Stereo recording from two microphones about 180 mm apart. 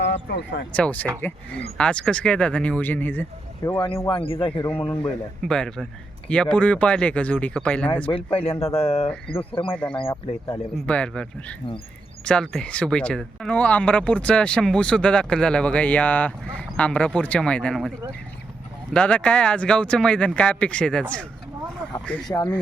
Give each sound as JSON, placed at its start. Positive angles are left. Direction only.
{"t": 0.0, "sound": "speech", "side_deg": 75}
{"t": 0.7, "sound": "speech", "side_deg": 10}
{"t": 3.8, "sound": "speech", "side_deg": 30}
{"t": 5.4, "sound": "speech", "side_deg": 5}
{"t": 8.1, "sound": "speech", "side_deg": 30}
{"t": 10.1, "sound": "speech", "side_deg": 20}
{"t": 10.8, "sound": "speech", "side_deg": 5}
{"t": 18.9, "sound": "speech", "side_deg": 5}